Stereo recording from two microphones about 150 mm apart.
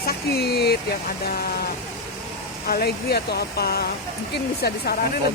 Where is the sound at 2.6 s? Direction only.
90° left.